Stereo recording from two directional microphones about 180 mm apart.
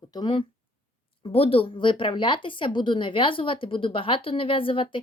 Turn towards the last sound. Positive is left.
turn(degrees=30)  # may be behind; listen again after turning